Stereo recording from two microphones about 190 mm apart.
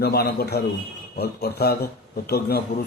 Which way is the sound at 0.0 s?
55° left (ahead or behind).